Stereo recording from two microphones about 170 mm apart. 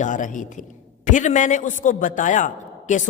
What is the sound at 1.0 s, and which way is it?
A man's voice, 45° left (ahead or behind).